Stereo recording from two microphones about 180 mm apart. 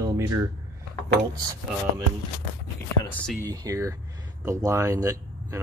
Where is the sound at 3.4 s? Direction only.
20° right (ahead or behind).